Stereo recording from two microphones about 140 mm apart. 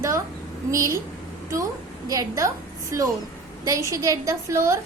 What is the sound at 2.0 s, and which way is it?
Speech, 25° right (ahead or behind).